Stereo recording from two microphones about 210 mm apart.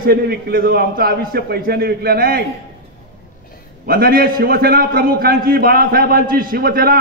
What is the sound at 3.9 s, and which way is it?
A man's voice, 45° right (ahead or behind).